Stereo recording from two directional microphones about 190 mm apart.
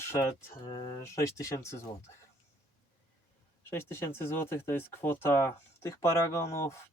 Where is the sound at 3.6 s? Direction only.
10° left (ahead or behind).